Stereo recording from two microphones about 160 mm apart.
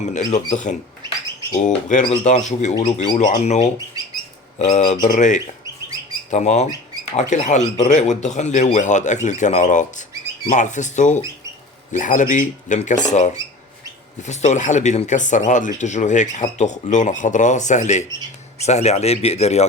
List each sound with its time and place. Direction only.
0.0 s speech: 45° left (ahead or behind)
2.0 s speech: 45° left (ahead or behind)
2.7 s speech: 30° left (ahead or behind)
3.4 s speech: 45° left (ahead or behind)
3.8 s bird: 20° right (ahead or behind)
4.5 s speech: 50° left (ahead or behind)